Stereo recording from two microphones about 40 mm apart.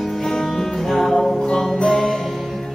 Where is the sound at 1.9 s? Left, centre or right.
Centre.